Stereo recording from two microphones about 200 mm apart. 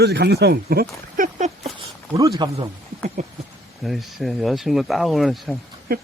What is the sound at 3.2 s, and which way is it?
Speech, 35° right (ahead or behind).